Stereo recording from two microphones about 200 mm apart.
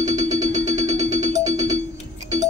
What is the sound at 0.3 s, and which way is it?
Music, 35° right (ahead or behind).